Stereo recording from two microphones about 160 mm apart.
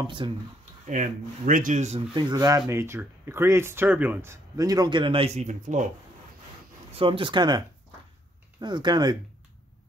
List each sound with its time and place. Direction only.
0.0 s speech: 30° right (ahead or behind)
0.8 s speech: 55° right (ahead or behind)
2.1 s speech: 25° right (ahead or behind); by 5.9 s 50° right (ahead or behind)
7.0 s speech: 30° right (ahead or behind)